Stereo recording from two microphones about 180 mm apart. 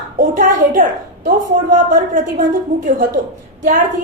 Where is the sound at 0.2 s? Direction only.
50° right (ahead or behind).